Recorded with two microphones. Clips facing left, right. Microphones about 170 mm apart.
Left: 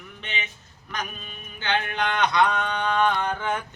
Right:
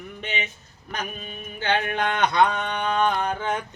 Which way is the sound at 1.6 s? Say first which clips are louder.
Right 2 dB; 45° right (ahead or behind).